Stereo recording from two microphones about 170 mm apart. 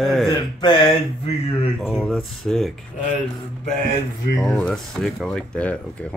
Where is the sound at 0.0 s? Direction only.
Centre (ahead or behind).